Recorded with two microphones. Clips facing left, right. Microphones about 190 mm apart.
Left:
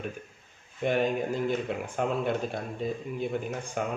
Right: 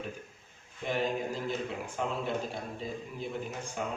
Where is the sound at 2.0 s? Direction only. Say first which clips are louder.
Left 5 dB; 55° left (ahead or behind).